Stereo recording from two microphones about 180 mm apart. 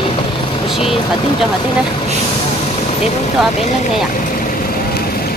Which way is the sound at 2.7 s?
35° left (ahead or behind).